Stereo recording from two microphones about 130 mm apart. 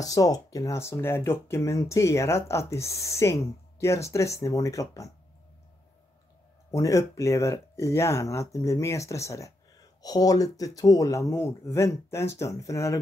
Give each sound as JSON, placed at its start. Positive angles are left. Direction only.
{"t": 0.0, "sound": "speech", "side_deg": 25}
{"t": 6.7, "sound": "speech", "side_deg": 25}